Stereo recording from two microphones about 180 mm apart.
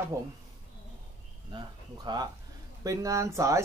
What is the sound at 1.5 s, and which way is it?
Speech, 25° right (ahead or behind).